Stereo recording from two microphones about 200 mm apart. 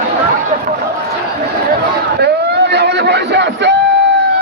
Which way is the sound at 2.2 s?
55° right (ahead or behind).